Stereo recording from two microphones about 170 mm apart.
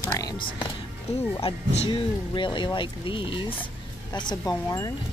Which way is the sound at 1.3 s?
35° left (ahead or behind).